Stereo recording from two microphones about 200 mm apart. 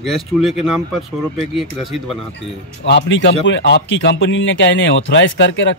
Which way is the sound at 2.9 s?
65° left (ahead or behind).